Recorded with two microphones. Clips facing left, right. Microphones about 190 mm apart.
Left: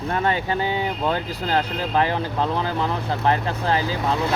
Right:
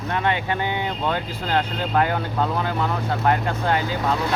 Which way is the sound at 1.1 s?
40° left (ahead or behind).